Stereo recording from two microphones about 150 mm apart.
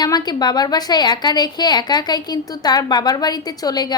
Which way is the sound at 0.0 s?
25° left (ahead or behind).